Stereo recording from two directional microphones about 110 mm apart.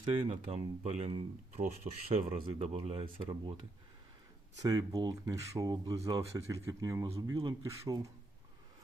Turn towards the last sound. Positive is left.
turn(degrees=-25)  # may be behind; listen again after turning